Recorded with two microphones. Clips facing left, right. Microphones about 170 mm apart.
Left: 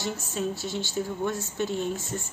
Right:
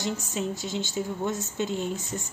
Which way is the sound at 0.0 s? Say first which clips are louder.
Even; 15° right (ahead or behind).